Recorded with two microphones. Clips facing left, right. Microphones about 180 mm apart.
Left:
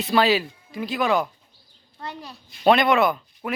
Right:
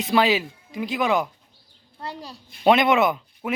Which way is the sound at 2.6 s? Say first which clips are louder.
Even; 20° right (ahead or behind).